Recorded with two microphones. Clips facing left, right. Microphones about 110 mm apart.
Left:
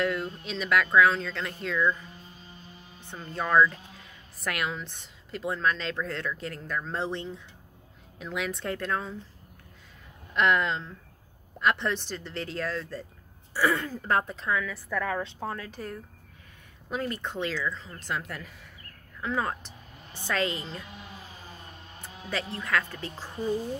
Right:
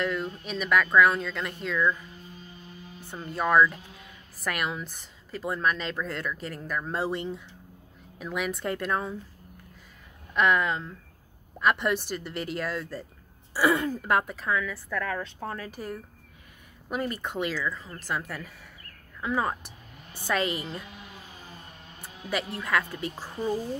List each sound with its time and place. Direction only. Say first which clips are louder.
0.0 s speech: left 1 dB; centre (ahead or behind)
3.1 s speech: right 2 dB; 10° right (ahead or behind)
10.3 s speech: right 1 dB; 5° right (ahead or behind)
15.0 s speech: left 1 dB; 20° left (ahead or behind)
15.7 s speech: right 1 dB; 10° right (ahead or behind)
22.3 s speech: right 2 dB; 10° right (ahead or behind)